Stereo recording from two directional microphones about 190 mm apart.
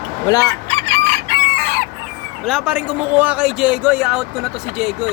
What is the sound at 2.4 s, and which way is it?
Speech, centre (ahead or behind).